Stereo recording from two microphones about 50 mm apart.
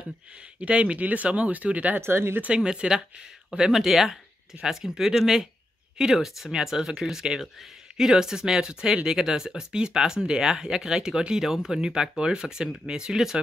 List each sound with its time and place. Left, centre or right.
0.6 s speech: right
2.0 s speech: right
2.4 s speech: centre